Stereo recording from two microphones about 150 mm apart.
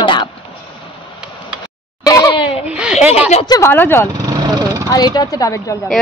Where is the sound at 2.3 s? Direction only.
35° left (ahead or behind).